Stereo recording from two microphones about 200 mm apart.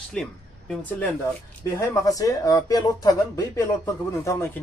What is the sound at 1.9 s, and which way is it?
A man's voice, 15° left (ahead or behind).